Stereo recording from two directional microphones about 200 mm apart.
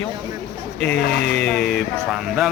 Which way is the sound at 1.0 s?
60° left (ahead or behind).